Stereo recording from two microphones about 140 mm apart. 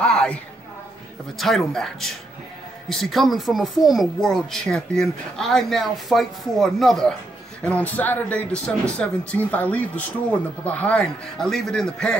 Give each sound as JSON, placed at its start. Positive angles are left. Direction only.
{"t": 0.0, "sound": "speech", "side_deg": 5}
{"t": 1.4, "sound": "speech", "side_deg": 0}